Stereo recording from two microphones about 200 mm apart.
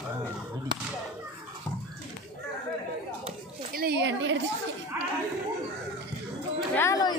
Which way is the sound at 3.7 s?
50° right (ahead or behind).